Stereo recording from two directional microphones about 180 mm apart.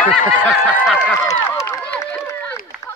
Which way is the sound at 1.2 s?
15° left (ahead or behind).